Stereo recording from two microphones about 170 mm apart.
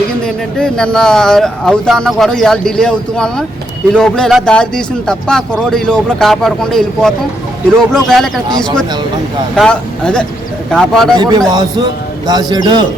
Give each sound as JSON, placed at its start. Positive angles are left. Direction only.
{"t": 0.3, "sound": "speech", "side_deg": 5}
{"t": 9.6, "sound": "speech", "side_deg": 5}
{"t": 11.2, "sound": "a man's voice", "side_deg": -25}